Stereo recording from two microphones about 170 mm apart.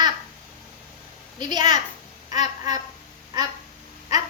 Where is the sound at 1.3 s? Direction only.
25° right (ahead or behind).